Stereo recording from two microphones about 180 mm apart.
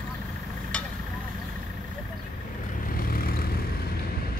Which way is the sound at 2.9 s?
55° left (ahead or behind).